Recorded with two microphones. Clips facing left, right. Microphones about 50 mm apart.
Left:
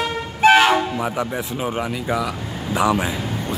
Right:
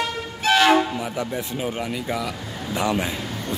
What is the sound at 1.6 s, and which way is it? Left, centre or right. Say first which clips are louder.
Speech: left 4 dB; centre.